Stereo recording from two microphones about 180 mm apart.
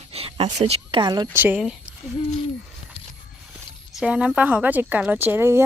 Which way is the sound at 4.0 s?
5° right (ahead or behind).